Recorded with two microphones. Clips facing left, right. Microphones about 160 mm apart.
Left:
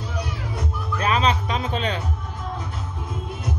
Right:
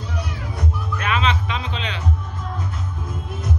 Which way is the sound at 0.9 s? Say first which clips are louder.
Left 2 dB; 35° left (ahead or behind).